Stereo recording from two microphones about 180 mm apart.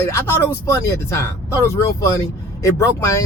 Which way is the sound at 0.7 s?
15° left (ahead or behind).